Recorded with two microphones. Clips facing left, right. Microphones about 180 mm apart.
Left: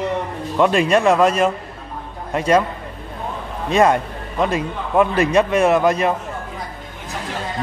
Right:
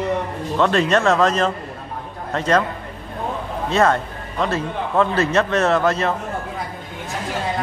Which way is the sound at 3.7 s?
15° left (ahead or behind).